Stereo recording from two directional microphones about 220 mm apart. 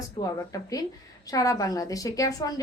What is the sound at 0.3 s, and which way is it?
A woman's voice, 15° left (ahead or behind).